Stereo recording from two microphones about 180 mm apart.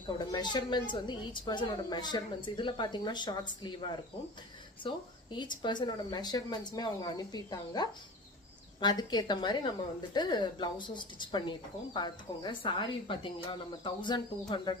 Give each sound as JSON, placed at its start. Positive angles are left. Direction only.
{"t": 0.2, "sound": "a woman's voice", "side_deg": 25}